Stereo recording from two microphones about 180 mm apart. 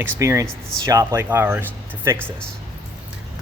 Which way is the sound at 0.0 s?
15° right (ahead or behind).